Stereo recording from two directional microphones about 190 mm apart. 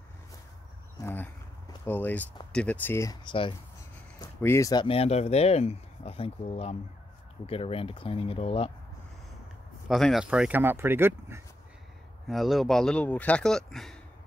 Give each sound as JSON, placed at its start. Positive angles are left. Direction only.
{"t": 1.0, "sound": "speech", "side_deg": 10}
{"t": 4.4, "sound": "speech", "side_deg": 15}
{"t": 9.8, "sound": "speech", "side_deg": 0}
{"t": 12.3, "sound": "speech", "side_deg": 0}